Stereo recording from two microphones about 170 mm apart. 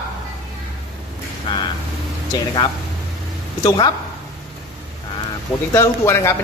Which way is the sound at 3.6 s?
25° left (ahead or behind).